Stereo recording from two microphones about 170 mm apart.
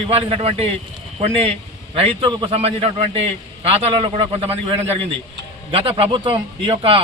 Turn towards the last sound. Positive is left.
turn(degrees=-35)  # may be behind; listen again after turning